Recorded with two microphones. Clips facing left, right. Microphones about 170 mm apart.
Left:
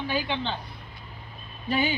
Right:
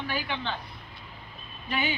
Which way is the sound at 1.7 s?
35° left (ahead or behind).